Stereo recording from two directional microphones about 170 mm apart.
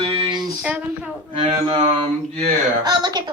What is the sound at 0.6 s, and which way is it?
Speech, 10° right (ahead or behind).